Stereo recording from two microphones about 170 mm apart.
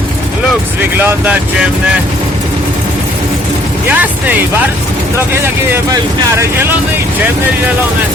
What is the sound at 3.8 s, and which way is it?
Speech, 10° right (ahead or behind).